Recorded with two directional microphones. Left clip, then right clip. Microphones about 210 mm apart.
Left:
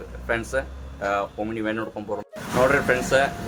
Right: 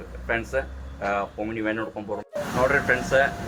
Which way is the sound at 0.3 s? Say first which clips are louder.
Left 1 dB; 20° left (ahead or behind).